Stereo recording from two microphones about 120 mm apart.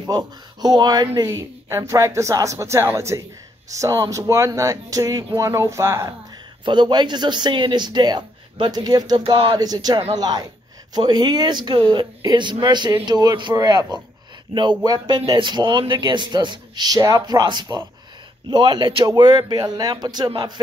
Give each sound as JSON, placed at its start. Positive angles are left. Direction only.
{"t": 0.0, "sound": "speech", "side_deg": -35}
{"t": 1.7, "sound": "speech", "side_deg": -25}
{"t": 6.6, "sound": "speech", "side_deg": -40}
{"t": 9.2, "sound": "speech", "side_deg": -45}